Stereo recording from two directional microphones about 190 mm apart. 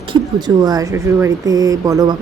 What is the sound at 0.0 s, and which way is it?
Speech, 25° right (ahead or behind).